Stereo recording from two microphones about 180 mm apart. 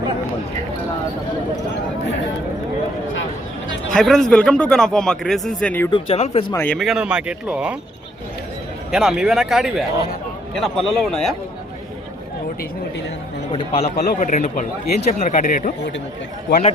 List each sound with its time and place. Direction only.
3.9 s a man's voice: 5° left (ahead or behind)
5.9 s speech: 35° left (ahead or behind)
6.5 s speech: 10° left (ahead or behind)
6.7 s a man's voice: centre (ahead or behind)
8.9 s a man's voice: 5° right (ahead or behind)
13.5 s speech: 35° left (ahead or behind)
13.9 s speech: 50° left (ahead or behind)